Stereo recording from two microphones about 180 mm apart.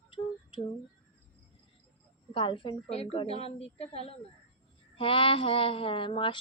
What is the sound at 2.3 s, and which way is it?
A woman's voice, 25° left (ahead or behind).